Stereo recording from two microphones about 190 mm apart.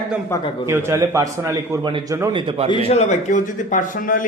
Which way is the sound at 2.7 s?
30° left (ahead or behind).